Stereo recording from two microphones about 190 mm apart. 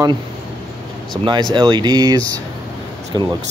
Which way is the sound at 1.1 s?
25° right (ahead or behind).